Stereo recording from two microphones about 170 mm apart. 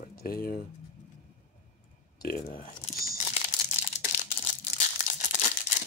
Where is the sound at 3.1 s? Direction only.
40° left (ahead or behind).